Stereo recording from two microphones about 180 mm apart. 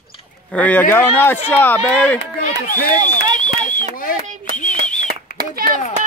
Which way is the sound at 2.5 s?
50° left (ahead or behind).